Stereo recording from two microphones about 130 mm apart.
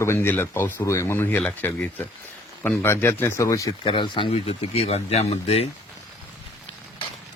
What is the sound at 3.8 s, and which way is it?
Speech, 40° left (ahead or behind).